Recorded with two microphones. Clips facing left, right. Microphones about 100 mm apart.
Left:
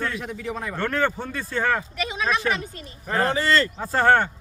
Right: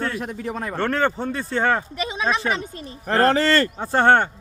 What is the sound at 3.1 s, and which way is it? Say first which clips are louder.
Speech: right 4 dB; 75° right (ahead or behind).